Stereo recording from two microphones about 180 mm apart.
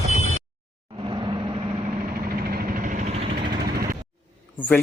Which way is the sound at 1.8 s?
50° right (ahead or behind).